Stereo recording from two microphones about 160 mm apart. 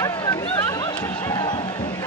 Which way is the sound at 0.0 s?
25° left (ahead or behind).